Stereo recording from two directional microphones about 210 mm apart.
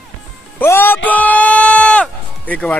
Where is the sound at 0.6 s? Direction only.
10° left (ahead or behind).